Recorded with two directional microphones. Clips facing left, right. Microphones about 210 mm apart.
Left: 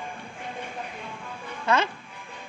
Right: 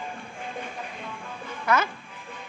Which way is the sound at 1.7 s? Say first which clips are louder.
Even; 25° left (ahead or behind).